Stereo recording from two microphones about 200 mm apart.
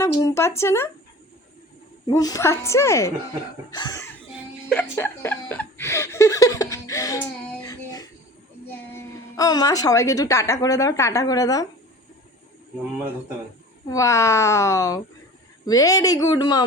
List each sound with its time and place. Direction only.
0.0 s a woman's voice: 15° left (ahead or behind)
2.0 s a woman's voice: 20° left (ahead or behind)
3.7 s cough: 20° left (ahead or behind)
4.7 s a sound: 10° left (ahead or behind)
9.3 s a woman's voice: 20° left (ahead or behind)
13.8 s a woman's voice: 15° left (ahead or behind)